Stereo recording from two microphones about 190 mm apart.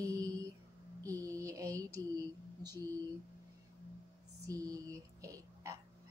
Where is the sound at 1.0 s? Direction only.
15° right (ahead or behind).